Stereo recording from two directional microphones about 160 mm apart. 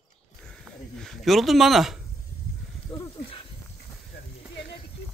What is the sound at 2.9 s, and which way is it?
Snake, 25° left (ahead or behind).